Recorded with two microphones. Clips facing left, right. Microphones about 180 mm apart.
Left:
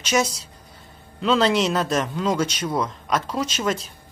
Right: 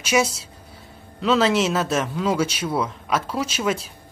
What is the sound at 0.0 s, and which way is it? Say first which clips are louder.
A woman's voice: right 1 dB; 10° right (ahead or behind).